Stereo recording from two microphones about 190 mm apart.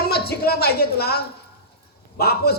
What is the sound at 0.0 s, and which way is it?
A woman's voice, 55° left (ahead or behind).